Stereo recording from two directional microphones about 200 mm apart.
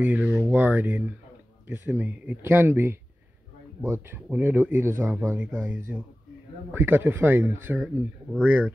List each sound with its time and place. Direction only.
0.0 s speech: 5° right (ahead or behind)